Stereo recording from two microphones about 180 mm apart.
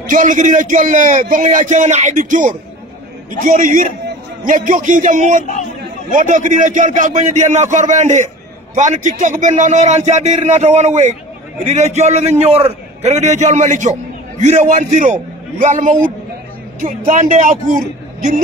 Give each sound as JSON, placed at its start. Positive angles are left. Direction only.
{"t": 0.1, "sound": "a man's voice", "side_deg": -40}
{"t": 3.6, "sound": "a man's voice", "side_deg": -45}